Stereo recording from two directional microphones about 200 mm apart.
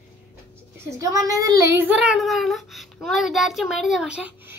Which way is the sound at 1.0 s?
15° right (ahead or behind).